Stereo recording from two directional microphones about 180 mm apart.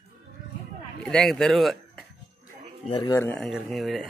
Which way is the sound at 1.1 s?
5° left (ahead or behind).